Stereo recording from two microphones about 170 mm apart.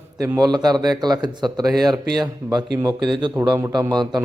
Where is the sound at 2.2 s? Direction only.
25° right (ahead or behind).